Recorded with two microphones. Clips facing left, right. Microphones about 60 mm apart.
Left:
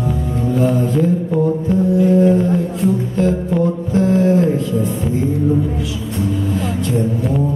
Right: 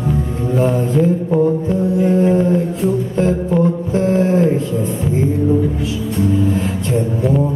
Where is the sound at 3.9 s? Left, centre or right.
Right.